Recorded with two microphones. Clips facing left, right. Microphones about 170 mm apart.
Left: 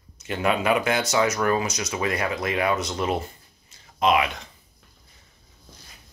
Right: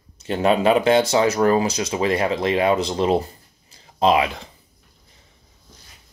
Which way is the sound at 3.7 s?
30° right (ahead or behind).